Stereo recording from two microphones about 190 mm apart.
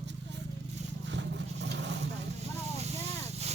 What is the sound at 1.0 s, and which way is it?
Vehicle, 65° right (ahead or behind).